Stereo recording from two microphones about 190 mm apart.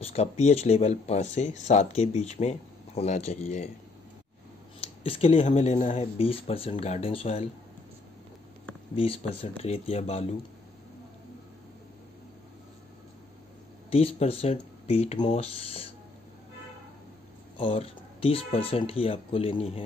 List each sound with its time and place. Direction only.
0.0 s speech: 35° left (ahead or behind)
4.7 s speech: 30° left (ahead or behind)
8.9 s speech: 30° left (ahead or behind)
13.8 s speech: 30° left (ahead or behind)
17.6 s speech: 30° left (ahead or behind)